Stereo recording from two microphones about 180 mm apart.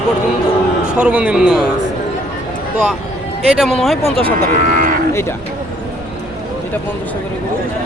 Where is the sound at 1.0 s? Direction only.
5° right (ahead or behind).